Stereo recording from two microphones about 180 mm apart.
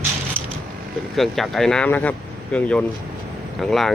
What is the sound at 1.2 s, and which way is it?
Speech, centre (ahead or behind).